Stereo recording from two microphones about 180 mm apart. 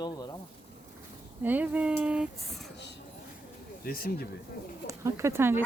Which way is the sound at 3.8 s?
55° left (ahead or behind).